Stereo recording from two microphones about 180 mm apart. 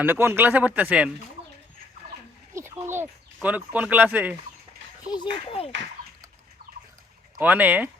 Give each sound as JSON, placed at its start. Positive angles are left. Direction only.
{"t": 0.0, "sound": "speech", "side_deg": -10}
{"t": 2.8, "sound": "speech", "side_deg": -10}
{"t": 5.1, "sound": "speech", "side_deg": 30}
{"t": 7.3, "sound": "speech", "side_deg": -10}